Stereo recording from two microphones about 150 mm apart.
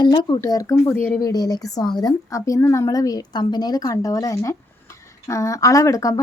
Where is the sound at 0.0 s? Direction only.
30° left (ahead or behind).